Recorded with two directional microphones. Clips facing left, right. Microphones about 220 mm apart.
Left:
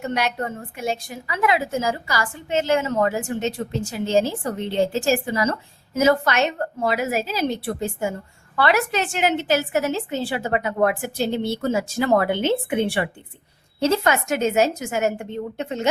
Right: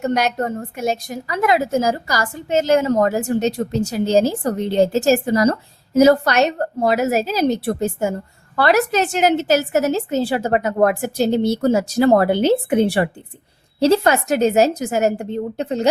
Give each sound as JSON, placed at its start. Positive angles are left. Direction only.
{"t": 0.0, "sound": "a woman's voice", "side_deg": -45}